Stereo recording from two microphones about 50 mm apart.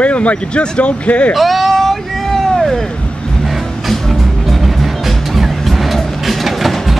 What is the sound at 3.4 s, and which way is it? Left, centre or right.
Music, centre.